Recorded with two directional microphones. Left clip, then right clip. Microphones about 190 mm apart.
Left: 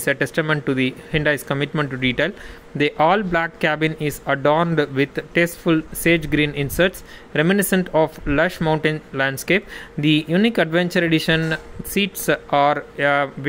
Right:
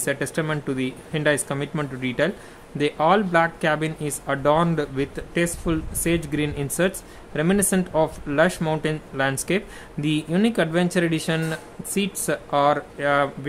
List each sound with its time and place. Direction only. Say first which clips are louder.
0.0 s speech: left 5 dB; 15° left (ahead or behind)